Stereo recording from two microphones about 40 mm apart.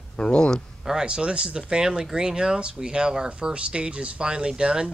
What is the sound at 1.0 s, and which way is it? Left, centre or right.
Speech, right.